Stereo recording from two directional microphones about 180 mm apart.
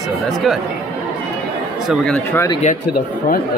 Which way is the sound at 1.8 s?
5° left (ahead or behind).